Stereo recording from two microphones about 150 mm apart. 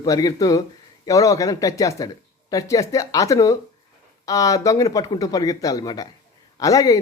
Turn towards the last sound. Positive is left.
turn(degrees=25)  # may be behind; listen again after turning